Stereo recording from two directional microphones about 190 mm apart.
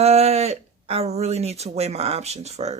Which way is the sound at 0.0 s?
35° right (ahead or behind).